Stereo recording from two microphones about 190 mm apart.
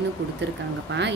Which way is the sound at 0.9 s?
65° right (ahead or behind).